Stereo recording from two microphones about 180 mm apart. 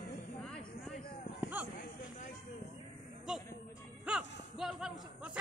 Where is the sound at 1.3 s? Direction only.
10° right (ahead or behind).